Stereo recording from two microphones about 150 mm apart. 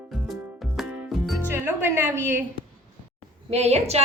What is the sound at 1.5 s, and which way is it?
Music, 15° right (ahead or behind).